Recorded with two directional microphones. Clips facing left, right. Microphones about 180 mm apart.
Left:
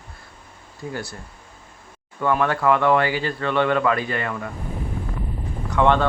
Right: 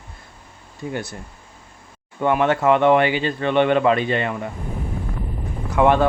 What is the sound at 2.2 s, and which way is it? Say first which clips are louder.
Speech: right 3 dB; 20° right (ahead or behind).